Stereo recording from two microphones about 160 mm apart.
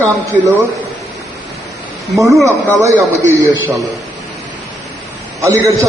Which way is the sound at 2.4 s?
20° right (ahead or behind).